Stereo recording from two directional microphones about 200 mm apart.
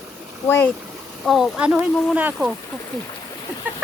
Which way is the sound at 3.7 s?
10° right (ahead or behind).